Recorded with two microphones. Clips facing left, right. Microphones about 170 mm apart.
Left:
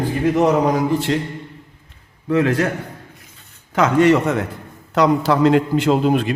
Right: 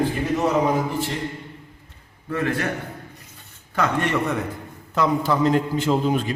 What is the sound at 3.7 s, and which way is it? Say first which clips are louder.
Speech: left 8 dB; 90° left.